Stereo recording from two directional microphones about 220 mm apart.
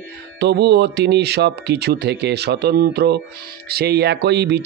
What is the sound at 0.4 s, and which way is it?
Speech, 50° right (ahead or behind).